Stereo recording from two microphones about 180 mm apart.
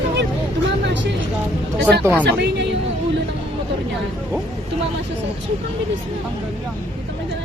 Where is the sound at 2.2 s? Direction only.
75° right (ahead or behind).